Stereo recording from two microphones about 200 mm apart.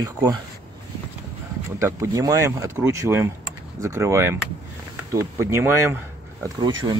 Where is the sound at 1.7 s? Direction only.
15° right (ahead or behind).